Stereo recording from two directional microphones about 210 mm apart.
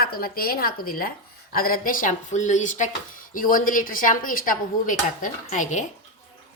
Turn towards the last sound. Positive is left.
turn(degrees=35)  # may be behind; listen again after turning